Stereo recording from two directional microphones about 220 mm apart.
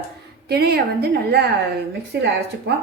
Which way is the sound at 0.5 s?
45° right (ahead or behind).